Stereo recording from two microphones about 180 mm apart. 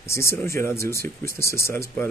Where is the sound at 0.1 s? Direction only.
15° left (ahead or behind).